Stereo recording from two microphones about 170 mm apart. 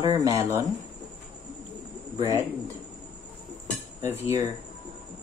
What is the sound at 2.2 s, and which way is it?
Speech, 20° right (ahead or behind).